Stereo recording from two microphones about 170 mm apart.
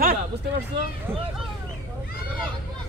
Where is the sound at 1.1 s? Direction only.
15° right (ahead or behind).